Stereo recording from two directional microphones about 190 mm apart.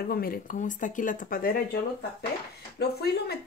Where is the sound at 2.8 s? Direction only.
55° left (ahead or behind).